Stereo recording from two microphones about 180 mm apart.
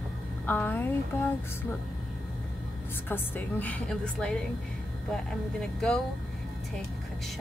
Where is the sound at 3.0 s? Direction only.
10° left (ahead or behind).